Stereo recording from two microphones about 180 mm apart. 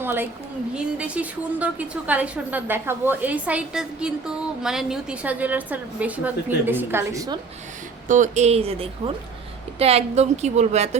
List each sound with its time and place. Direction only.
0.0 s a woman's voice: 10° right (ahead or behind)
8.0 s speech: 45° right (ahead or behind)